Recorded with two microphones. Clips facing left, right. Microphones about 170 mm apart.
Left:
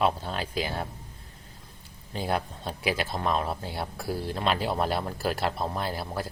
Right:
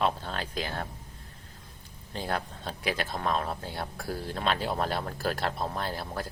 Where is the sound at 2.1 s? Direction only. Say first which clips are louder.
Left 3 dB; 10° left (ahead or behind).